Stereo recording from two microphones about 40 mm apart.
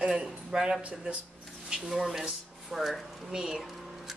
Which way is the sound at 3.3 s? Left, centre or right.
Centre.